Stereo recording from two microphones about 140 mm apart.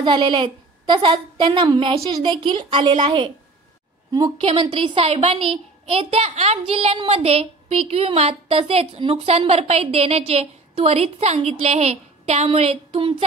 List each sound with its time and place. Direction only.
0.0 s a woman's voice: 35° right (ahead or behind)
4.5 s a child's voice: 35° right (ahead or behind)